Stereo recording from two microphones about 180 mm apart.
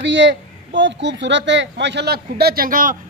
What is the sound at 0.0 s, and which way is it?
A woman's voice, 80° right.